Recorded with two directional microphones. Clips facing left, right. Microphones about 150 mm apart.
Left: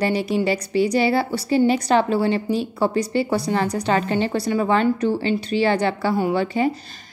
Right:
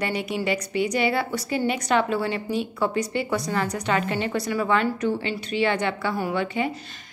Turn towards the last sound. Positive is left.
turn(degrees=35)  # may be behind; listen again after turning